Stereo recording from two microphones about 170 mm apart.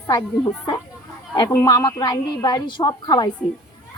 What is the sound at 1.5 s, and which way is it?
A woman's voice, 20° left (ahead or behind).